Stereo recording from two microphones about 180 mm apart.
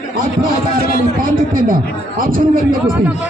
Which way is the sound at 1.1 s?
50° right (ahead or behind).